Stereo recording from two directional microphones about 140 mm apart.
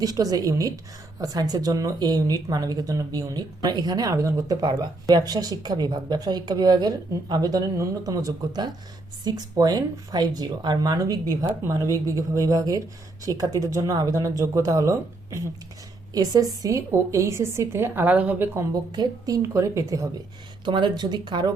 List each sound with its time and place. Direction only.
0.0 s speech: 25° right (ahead or behind)
18.7 s speech: 30° right (ahead or behind)
20.7 s speech: 35° right (ahead or behind)